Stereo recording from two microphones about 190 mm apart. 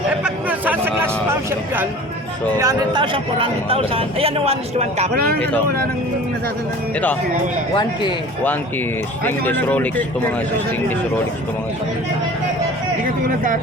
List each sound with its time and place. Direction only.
0.2 s a sound: 5° right (ahead or behind)
2.6 s speech: 20° right (ahead or behind)
9.2 s speech: 10° left (ahead or behind)
13.2 s speech: 45° right (ahead or behind)